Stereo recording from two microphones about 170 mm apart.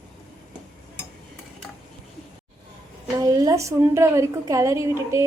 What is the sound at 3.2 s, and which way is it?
A woman's voice, 20° right (ahead or behind).